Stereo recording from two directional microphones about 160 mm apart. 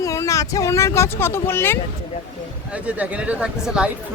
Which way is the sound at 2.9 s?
10° right (ahead or behind).